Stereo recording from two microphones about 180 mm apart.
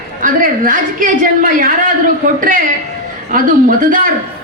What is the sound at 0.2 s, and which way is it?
A woman's voice, 45° right (ahead or behind).